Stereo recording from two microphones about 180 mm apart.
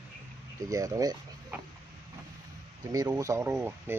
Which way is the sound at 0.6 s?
20° right (ahead or behind).